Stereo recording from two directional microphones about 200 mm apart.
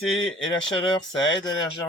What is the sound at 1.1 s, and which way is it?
Speech, 70° left (ahead or behind).